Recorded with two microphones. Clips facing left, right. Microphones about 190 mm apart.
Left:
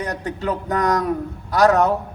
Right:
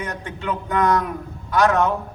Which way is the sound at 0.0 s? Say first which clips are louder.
Left 4 dB; 40° left (ahead or behind).